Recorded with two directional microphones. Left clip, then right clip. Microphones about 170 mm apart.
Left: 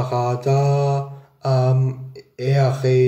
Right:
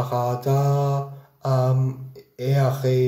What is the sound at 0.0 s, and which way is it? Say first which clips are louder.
Mantra: left 2 dB; 15° left (ahead or behind).